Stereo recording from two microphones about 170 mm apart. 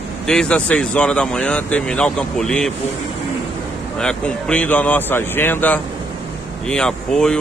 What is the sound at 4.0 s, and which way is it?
Speech, 5° left (ahead or behind).